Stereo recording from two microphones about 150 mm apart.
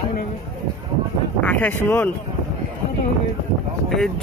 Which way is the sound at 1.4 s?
10° left (ahead or behind).